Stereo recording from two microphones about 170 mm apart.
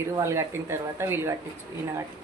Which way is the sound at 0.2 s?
15° right (ahead or behind).